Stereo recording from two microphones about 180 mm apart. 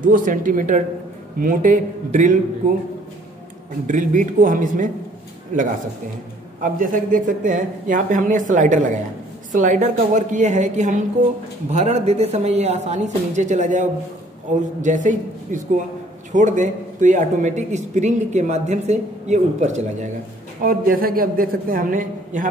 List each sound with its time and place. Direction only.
0.0 s speech: 50° right (ahead or behind)
3.8 s speech: 45° right (ahead or behind)
6.6 s speech: 45° right (ahead or behind)
20.6 s speech: 55° right (ahead or behind)